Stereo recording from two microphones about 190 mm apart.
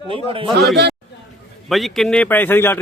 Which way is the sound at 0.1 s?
30° right (ahead or behind).